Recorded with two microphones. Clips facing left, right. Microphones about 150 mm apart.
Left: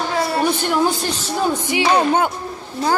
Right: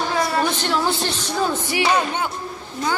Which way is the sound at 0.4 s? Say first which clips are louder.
Left 3 dB; 15° left (ahead or behind).